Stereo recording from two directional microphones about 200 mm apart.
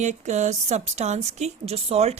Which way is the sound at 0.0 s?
35° right (ahead or behind).